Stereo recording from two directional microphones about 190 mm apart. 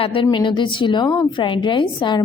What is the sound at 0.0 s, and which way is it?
A woman's voice, 25° left (ahead or behind).